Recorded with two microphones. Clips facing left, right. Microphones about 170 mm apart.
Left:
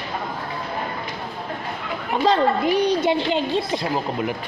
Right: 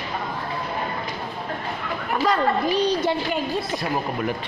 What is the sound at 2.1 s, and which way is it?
A woman's voice, 25° left (ahead or behind).